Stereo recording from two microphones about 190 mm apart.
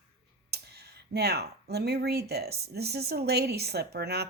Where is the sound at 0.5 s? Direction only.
55° right (ahead or behind).